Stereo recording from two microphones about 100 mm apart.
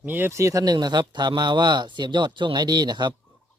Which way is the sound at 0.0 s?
20° right (ahead or behind).